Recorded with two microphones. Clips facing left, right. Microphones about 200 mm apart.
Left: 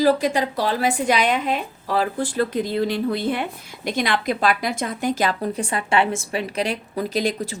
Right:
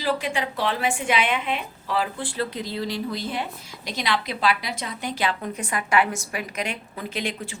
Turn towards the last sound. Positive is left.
turn(degrees=40)  # may be behind; listen again after turning